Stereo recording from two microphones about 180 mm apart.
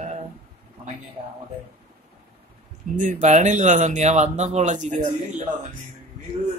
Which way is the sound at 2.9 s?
45° right (ahead or behind).